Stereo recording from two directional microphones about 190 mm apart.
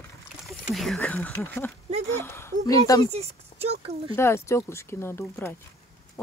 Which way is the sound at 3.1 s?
35° right (ahead or behind).